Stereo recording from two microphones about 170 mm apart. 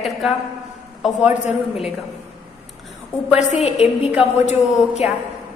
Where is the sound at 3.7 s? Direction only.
5° right (ahead or behind).